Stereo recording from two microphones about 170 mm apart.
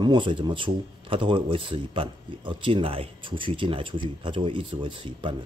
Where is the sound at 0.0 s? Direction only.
30° right (ahead or behind).